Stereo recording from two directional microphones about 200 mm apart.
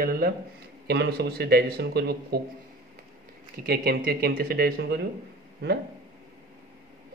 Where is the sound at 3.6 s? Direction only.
50° right (ahead or behind).